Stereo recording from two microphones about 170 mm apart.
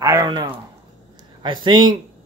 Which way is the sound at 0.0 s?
20° right (ahead or behind).